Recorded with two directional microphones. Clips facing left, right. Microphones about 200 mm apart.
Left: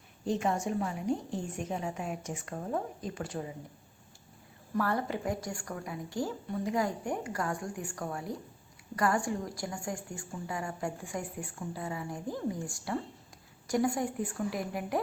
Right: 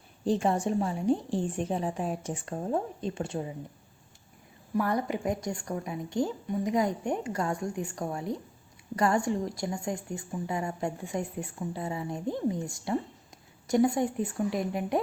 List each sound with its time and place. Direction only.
0.3 s a woman's voice: 30° right (ahead or behind)
4.7 s a woman's voice: 15° right (ahead or behind)